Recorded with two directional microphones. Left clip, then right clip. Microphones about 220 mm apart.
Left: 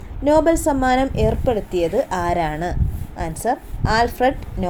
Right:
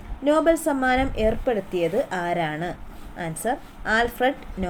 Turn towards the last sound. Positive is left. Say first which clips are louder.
# left 4 dB
turn(degrees=15)  # may be behind; listen again after turning